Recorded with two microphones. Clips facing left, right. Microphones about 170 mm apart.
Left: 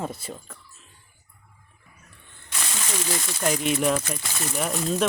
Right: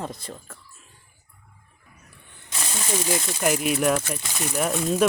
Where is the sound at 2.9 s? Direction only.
20° right (ahead or behind).